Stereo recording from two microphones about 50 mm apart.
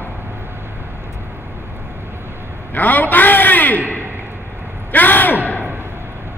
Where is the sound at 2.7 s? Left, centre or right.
Left.